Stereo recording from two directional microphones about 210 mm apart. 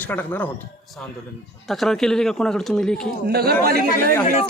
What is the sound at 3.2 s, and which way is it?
Speech, 50° right (ahead or behind).